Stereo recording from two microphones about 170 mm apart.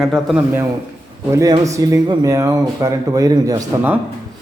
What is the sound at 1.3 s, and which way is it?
Speech, 20° right (ahead or behind).